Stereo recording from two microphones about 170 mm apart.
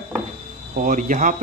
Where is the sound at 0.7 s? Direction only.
55° right (ahead or behind).